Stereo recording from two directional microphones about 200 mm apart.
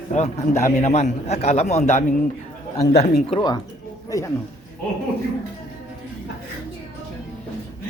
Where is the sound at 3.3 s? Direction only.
20° left (ahead or behind).